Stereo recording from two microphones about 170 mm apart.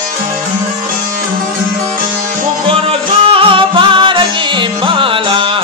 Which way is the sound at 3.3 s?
30° right (ahead or behind).